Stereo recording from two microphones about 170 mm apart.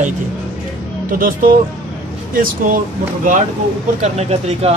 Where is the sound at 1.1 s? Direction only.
55° right (ahead or behind).